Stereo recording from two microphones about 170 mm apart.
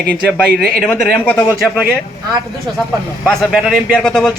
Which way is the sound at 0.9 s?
10° left (ahead or behind).